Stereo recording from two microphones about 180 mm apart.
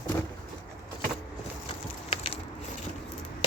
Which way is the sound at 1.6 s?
30° left (ahead or behind).